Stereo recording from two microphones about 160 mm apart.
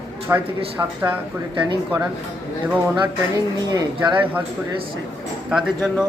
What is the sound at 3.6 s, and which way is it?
Speech, 25° right (ahead or behind).